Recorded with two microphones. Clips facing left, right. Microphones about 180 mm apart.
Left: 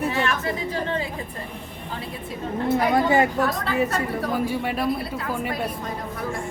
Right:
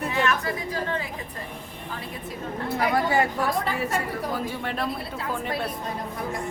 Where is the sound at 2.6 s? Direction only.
20° left (ahead or behind).